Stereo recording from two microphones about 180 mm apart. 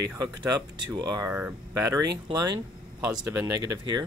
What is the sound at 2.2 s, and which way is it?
Speech, 20° right (ahead or behind).